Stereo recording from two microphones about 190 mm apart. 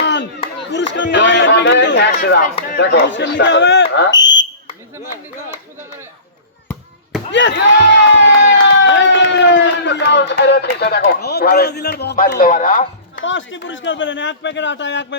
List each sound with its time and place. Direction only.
0.0 s a sound: 70° left (ahead or behind)
2.7 s speech: 65° left (ahead or behind)
7.3 s speech: 70° left (ahead or behind)
8.2 s run: 70° left (ahead or behind); by 12.8 s 45° left (ahead or behind)
13.1 s speech: 80° left